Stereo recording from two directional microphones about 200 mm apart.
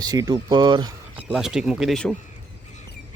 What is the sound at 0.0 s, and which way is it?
Speech, 20° right (ahead or behind).